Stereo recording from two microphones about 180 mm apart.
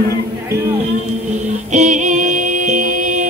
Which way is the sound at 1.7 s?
40° right (ahead or behind).